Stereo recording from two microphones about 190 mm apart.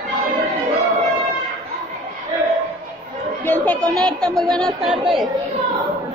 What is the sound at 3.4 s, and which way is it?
Chatter, 10° left (ahead or behind).